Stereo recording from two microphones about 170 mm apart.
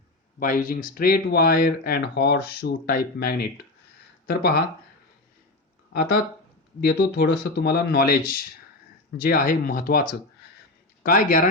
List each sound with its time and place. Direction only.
0.3 s speech: 55° left (ahead or behind)
5.9 s speech: 65° left (ahead or behind)